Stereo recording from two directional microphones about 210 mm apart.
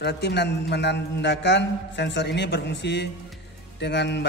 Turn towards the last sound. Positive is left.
turn(degrees=55)  # may be behind; listen again after turning